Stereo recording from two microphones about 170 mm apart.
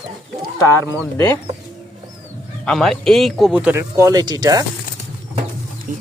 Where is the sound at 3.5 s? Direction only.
10° right (ahead or behind).